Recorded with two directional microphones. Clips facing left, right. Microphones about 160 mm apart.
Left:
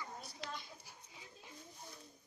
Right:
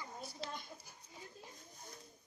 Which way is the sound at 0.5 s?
50° right (ahead or behind).